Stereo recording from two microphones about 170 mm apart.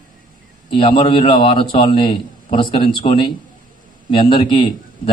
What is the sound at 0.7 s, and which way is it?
A man's voice, 30° left (ahead or behind).